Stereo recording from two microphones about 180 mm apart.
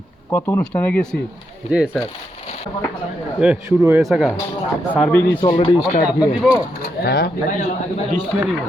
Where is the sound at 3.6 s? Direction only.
15° right (ahead or behind).